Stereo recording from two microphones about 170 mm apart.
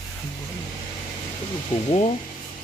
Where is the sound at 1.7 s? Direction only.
40° left (ahead or behind).